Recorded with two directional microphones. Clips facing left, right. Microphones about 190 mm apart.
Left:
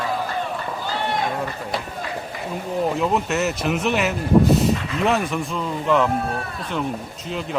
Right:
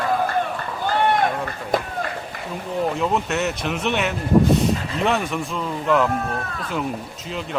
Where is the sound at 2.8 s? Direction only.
Centre (ahead or behind).